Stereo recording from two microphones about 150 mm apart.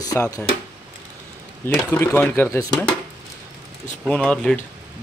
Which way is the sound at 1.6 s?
15° left (ahead or behind).